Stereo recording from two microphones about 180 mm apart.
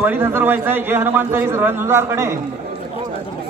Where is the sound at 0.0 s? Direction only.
10° right (ahead or behind).